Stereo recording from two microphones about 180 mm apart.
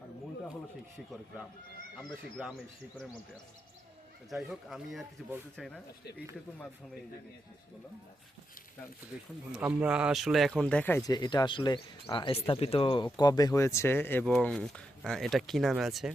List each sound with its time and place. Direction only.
2.0 s speech: centre (ahead or behind)
4.3 s speech: centre (ahead or behind)
9.6 s speech: 5° right (ahead or behind); by 11.1 s 10° left (ahead or behind)
11.1 s speech: 25° left (ahead or behind); by 16.1 s centre (ahead or behind)